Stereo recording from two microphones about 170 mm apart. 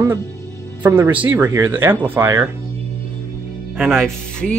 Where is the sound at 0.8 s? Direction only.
10° right (ahead or behind).